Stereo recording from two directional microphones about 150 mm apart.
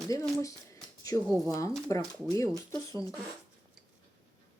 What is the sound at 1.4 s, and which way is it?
Speech, 20° left (ahead or behind).